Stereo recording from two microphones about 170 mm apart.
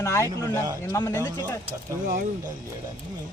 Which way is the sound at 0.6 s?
20° right (ahead or behind).